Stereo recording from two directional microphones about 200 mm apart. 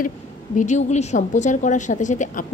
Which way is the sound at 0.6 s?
35° left (ahead or behind).